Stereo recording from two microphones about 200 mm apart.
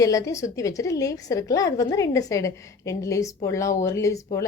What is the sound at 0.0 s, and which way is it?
A woman's voice, 15° left (ahead or behind).